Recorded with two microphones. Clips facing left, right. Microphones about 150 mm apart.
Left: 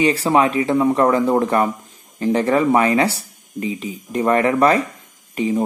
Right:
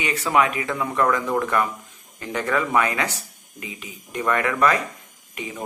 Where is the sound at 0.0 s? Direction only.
30° left (ahead or behind).